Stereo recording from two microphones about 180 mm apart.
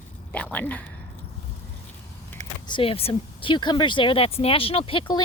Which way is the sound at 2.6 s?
30° left (ahead or behind).